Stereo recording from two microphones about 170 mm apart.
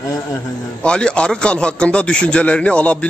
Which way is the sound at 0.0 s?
20° left (ahead or behind).